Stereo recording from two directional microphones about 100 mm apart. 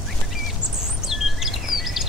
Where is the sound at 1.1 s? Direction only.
5° right (ahead or behind).